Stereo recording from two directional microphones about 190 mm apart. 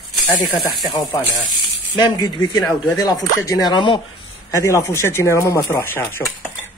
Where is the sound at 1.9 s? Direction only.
25° left (ahead or behind).